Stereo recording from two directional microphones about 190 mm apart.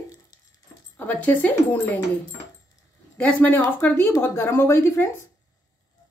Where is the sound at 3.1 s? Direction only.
10° left (ahead or behind).